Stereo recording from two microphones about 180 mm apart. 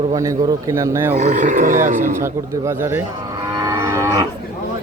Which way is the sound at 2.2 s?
15° right (ahead or behind).